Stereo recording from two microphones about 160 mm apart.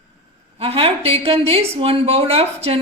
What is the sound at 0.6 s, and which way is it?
A woman's voice, 35° right (ahead or behind).